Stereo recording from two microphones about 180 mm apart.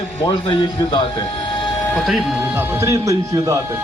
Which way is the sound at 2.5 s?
15° right (ahead or behind).